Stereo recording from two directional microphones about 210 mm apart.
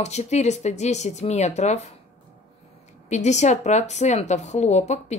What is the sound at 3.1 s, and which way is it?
Speech, 35° left (ahead or behind).